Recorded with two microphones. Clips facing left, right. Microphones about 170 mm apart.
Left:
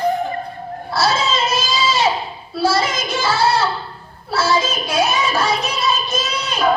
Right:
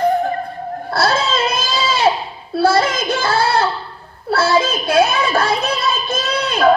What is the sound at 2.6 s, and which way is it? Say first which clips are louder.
Child singing: right 3 dB; 55° right (ahead or behind).